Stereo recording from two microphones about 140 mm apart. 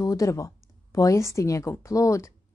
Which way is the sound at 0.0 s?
25° left (ahead or behind).